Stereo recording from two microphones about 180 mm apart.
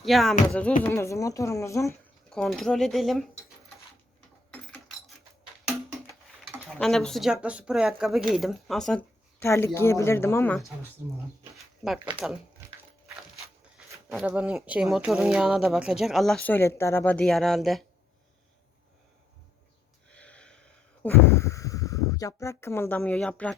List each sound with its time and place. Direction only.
0.0 s speech: centre (ahead or behind)
0.8 s speech: 10° left (ahead or behind)
2.3 s speech: 5° left (ahead or behind)
4.5 s a sound: 5° left (ahead or behind)
6.7 s speech: centre (ahead or behind)
11.0 s speech: 15° right (ahead or behind)
11.5 s a sound: centre (ahead or behind)
12.1 s speech: 5° right (ahead or behind)
20.1 s a sound: 5° left (ahead or behind)